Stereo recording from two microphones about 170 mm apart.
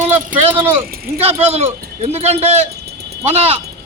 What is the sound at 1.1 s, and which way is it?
A man's voice, 40° right (ahead or behind).